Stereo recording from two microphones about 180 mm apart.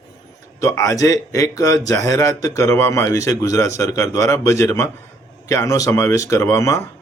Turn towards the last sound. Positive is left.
turn(degrees=15)  # may be behind; listen again after turning